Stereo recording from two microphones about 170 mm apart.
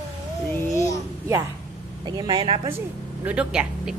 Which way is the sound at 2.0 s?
25° right (ahead or behind).